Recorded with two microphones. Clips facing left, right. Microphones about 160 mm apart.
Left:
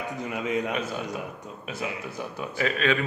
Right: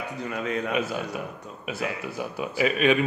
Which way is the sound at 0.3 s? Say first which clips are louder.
Left 1 dB; 15° left (ahead or behind).